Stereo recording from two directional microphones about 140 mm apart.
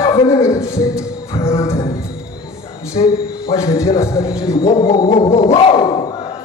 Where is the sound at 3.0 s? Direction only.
35° left (ahead or behind).